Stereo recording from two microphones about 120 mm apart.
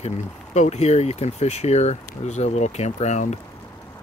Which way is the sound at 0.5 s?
70° left (ahead or behind).